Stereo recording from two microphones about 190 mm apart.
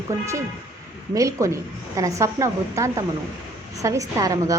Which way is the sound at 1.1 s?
15° right (ahead or behind).